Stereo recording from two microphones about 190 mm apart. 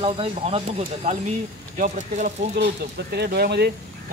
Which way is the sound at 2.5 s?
60° right (ahead or behind).